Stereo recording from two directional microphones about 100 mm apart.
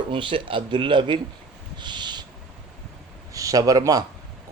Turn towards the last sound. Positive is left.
turn(degrees=-40)  # may be behind; listen again after turning